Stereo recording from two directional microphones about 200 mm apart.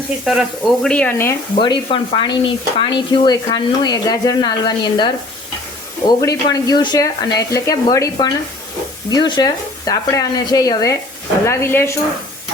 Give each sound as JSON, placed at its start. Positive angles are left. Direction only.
{"t": 0.3, "sound": "speech", "side_deg": 0}
{"t": 1.5, "sound": "speech", "side_deg": 25}